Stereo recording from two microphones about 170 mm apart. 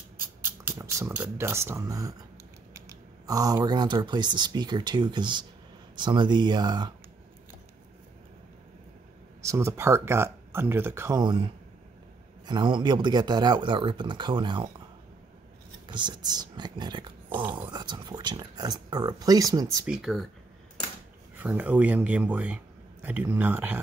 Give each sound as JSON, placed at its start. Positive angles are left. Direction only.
{"t": 0.5, "sound": "speech", "side_deg": -15}
{"t": 3.3, "sound": "speech", "side_deg": -20}
{"t": 9.4, "sound": "speech", "side_deg": -15}
{"t": 15.9, "sound": "speech", "side_deg": -25}
{"t": 19.9, "sound": "speech", "side_deg": 0}
{"t": 21.4, "sound": "speech", "side_deg": -10}